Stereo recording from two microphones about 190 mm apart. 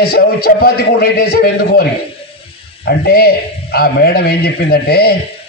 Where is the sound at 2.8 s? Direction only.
55° left (ahead or behind).